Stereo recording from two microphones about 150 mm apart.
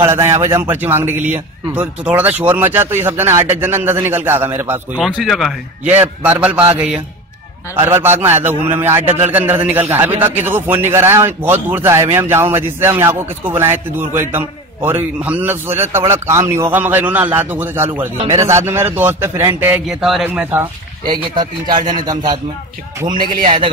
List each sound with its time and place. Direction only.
0.0 s a man's voice: 15° right (ahead or behind)
4.9 s a man's voice: centre (ahead or behind)
5.9 s a man's voice: 15° right (ahead or behind)
7.7 s a man's voice: 15° right (ahead or behind)
21.0 s a man's voice: 30° right (ahead or behind)
23.4 s a man's voice: 35° right (ahead or behind)